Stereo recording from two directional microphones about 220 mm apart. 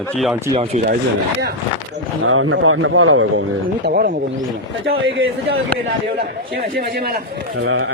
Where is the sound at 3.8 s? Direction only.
45° right (ahead or behind).